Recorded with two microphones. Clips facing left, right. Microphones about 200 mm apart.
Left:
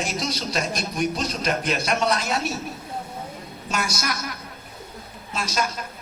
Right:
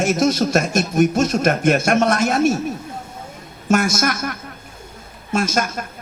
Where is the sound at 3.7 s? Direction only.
50° right (ahead or behind).